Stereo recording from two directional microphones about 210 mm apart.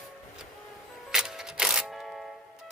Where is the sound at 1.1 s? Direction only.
5° right (ahead or behind).